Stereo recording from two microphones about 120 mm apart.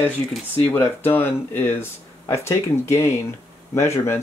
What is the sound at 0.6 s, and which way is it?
Speech, 15° left (ahead or behind).